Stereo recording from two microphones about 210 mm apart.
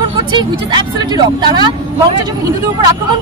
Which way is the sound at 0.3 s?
20° right (ahead or behind).